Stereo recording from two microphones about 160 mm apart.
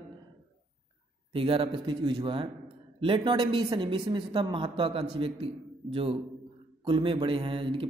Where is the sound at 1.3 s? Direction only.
35° right (ahead or behind).